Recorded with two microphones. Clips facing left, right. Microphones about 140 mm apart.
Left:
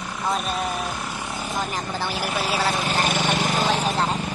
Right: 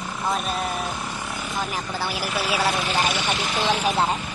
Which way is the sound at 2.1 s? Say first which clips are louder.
Even; 45° left (ahead or behind).